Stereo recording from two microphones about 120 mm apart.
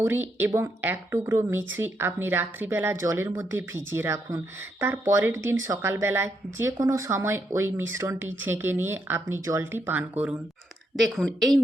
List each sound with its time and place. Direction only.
0.0 s speech: 15° right (ahead or behind)
11.0 s a woman's voice: 5° left (ahead or behind)